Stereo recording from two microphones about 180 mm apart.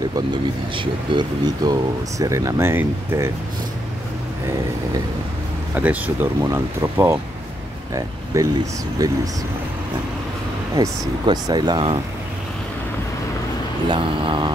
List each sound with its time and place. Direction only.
0.1 s speech: 25° right (ahead or behind)
5.8 s speech: 10° right (ahead or behind)
10.8 s speech: 25° right (ahead or behind)
13.8 s speech: 25° right (ahead or behind)